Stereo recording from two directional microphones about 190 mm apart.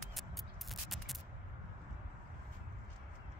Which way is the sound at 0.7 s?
Centre (ahead or behind).